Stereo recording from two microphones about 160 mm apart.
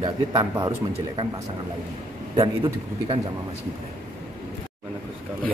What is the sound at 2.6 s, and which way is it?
Speech, 35° right (ahead or behind).